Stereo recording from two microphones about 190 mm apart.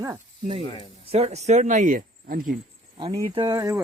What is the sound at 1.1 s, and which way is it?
Speech, 35° right (ahead or behind).